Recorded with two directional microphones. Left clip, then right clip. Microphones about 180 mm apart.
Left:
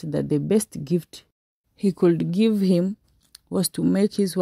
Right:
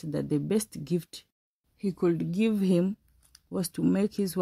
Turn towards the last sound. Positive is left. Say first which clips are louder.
# left 6 dB
turn(degrees=30)  # may be behind; listen again after turning